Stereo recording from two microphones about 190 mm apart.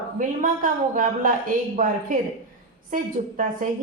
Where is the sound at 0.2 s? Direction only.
45° right (ahead or behind).